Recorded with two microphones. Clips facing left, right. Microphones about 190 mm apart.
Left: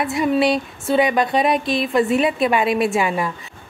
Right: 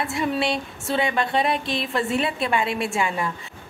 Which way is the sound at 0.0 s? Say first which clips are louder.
Left 6 dB; 20° left (ahead or behind).